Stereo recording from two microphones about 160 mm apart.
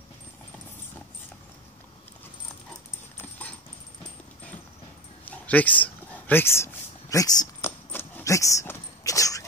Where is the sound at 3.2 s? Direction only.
10° left (ahead or behind).